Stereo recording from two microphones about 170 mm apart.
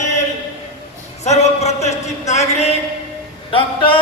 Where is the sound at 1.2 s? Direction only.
40° left (ahead or behind).